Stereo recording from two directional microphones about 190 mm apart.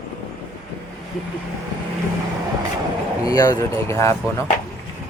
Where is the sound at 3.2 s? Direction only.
20° left (ahead or behind).